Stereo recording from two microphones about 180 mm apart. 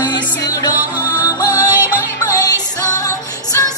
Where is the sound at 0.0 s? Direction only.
25° left (ahead or behind).